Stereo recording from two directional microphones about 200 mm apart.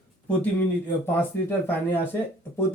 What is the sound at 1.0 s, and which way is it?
Speech, 10° left (ahead or behind).